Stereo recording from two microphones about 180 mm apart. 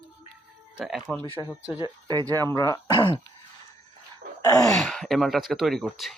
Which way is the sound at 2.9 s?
25° left (ahead or behind).